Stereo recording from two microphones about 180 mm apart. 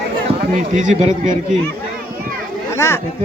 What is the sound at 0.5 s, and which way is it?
Speech, 45° right (ahead or behind).